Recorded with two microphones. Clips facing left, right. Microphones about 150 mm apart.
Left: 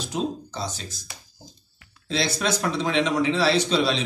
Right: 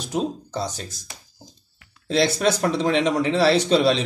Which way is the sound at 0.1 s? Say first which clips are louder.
Right 4 dB; 40° right (ahead or behind).